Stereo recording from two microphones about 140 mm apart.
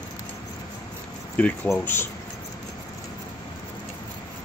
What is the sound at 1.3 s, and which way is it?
Speech, 15° left (ahead or behind).